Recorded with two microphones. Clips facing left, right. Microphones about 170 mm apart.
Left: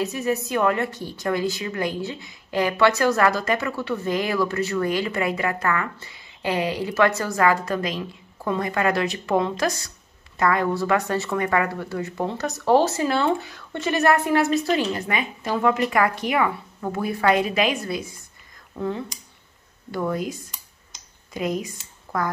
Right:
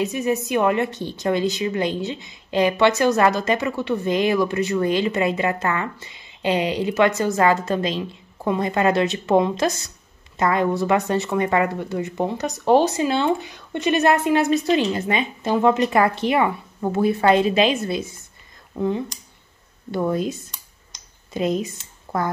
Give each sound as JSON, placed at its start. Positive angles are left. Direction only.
{"t": 0.0, "sound": "a woman's voice", "side_deg": -20}